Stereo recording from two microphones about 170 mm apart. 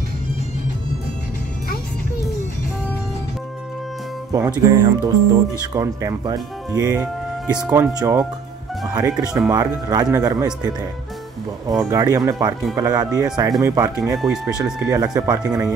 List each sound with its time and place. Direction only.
4.3 s speech: 20° right (ahead or behind)
11.9 s speech: 20° right (ahead or behind)
14.1 s speech: centre (ahead or behind)
14.4 s speech: 20° right (ahead or behind)